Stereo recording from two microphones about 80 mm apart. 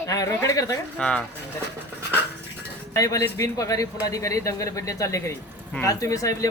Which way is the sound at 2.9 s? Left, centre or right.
Left.